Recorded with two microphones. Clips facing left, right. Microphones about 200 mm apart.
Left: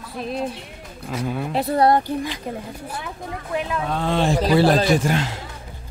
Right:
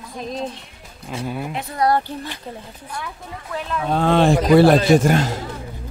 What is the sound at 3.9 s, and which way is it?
Speech, 60° right (ahead or behind).